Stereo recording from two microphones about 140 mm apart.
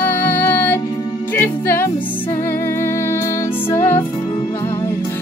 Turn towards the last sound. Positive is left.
turn(degrees=20)  # may be behind; listen again after turning